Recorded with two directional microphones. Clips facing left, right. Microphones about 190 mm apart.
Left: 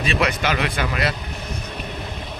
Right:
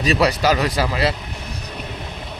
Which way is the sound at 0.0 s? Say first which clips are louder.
Right 4 dB; 40° right (ahead or behind).